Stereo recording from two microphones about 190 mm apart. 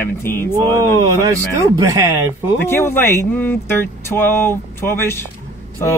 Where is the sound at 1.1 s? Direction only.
15° right (ahead or behind).